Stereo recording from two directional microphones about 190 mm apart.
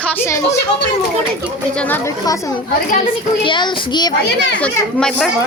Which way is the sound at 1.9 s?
15° left (ahead or behind).